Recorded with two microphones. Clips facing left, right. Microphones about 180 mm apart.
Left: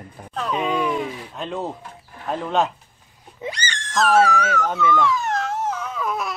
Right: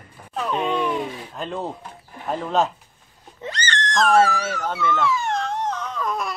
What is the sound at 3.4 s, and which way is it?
Speech, 10° left (ahead or behind).